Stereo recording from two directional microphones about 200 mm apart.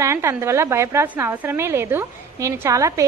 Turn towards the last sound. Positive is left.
turn(degrees=-15)  # may be behind; listen again after turning